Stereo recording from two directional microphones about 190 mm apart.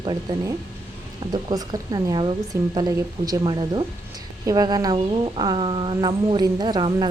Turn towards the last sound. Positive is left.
turn(degrees=-25)  # may be behind; listen again after turning